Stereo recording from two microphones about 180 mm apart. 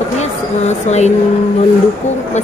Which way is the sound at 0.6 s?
40° left (ahead or behind).